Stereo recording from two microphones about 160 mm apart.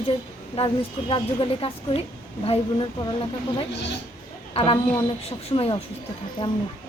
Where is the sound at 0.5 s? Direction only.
35° left (ahead or behind).